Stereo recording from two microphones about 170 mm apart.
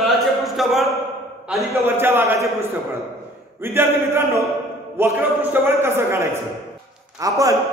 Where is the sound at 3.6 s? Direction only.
15° right (ahead or behind).